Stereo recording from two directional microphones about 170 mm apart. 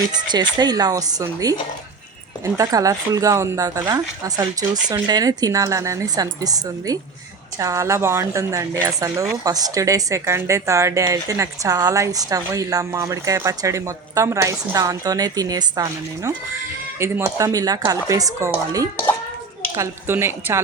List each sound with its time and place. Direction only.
0.1 s a woman's voice: 25° right (ahead or behind)